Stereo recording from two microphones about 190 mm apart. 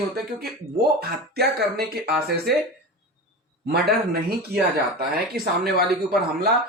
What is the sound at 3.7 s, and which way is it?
Speech, 55° right (ahead or behind).